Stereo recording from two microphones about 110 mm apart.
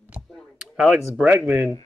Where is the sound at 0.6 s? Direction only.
5° right (ahead or behind).